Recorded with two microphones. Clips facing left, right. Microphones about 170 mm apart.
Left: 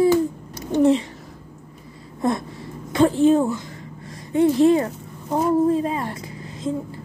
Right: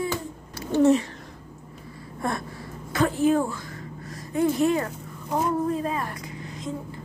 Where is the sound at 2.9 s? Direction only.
25° left (ahead or behind).